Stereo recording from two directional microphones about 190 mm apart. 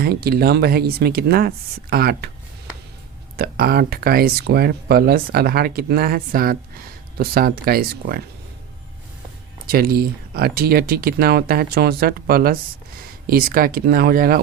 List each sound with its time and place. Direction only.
0.0 s speech: 55° right (ahead or behind)
3.3 s speech: 50° right (ahead or behind)
9.6 s speech: 50° right (ahead or behind)